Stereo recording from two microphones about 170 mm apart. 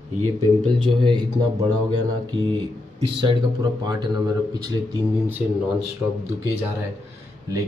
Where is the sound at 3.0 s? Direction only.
30° right (ahead or behind).